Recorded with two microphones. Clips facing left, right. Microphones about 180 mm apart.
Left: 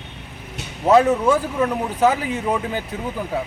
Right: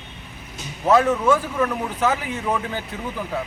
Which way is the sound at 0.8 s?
20° left (ahead or behind).